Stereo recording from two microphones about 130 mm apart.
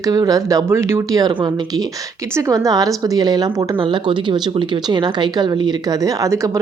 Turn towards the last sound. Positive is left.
turn(degrees=-25)  # may be behind; listen again after turning